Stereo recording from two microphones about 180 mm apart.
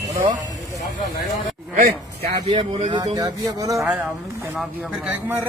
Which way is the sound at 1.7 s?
55° right (ahead or behind).